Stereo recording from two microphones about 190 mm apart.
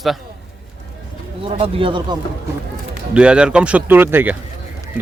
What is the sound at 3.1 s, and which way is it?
A man's voice, 5° right (ahead or behind).